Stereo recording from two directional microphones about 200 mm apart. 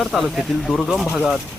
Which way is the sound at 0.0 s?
Centre (ahead or behind).